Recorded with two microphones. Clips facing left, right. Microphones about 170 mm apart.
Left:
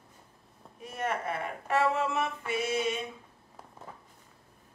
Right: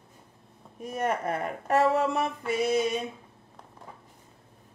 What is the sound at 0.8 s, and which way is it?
Speech, 45° right (ahead or behind).